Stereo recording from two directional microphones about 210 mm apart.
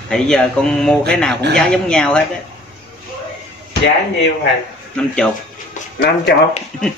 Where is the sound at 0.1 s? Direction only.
5° left (ahead or behind).